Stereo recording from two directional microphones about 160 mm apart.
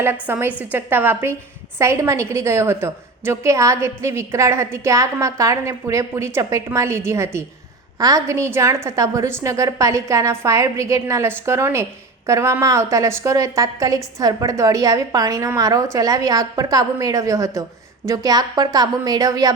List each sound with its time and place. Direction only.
0.0 s a woman's voice: 15° right (ahead or behind)